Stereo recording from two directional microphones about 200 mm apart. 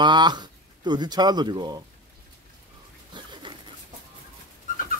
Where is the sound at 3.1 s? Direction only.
25° right (ahead or behind).